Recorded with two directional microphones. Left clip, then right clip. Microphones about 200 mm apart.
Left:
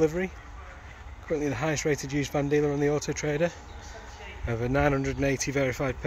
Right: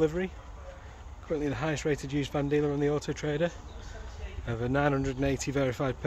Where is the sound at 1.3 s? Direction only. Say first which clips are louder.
Left 3 dB; 15° left (ahead or behind).